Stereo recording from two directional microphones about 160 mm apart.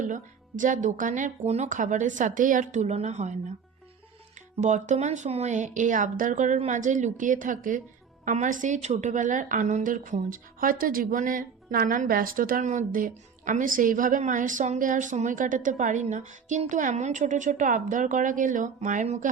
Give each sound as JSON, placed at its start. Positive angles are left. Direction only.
{"t": 0.0, "sound": "a woman's voice", "side_deg": -55}
{"t": 4.5, "sound": "a woman's voice", "side_deg": -50}